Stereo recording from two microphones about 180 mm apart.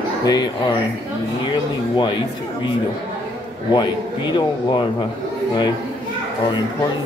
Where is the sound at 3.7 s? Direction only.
25° left (ahead or behind).